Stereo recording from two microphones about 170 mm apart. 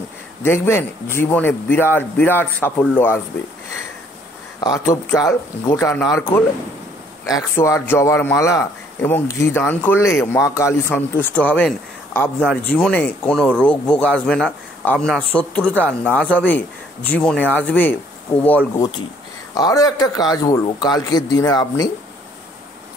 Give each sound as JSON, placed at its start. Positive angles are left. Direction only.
{"t": 0.4, "sound": "a man's voice", "side_deg": 15}
{"t": 4.6, "sound": "a man's voice", "side_deg": 20}
{"t": 19.5, "sound": "a man's voice", "side_deg": 20}